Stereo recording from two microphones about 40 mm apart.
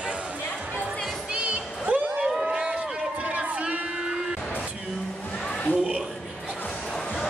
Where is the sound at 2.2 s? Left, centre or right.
Centre.